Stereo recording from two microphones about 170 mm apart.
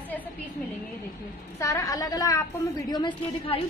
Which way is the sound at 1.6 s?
20° left (ahead or behind).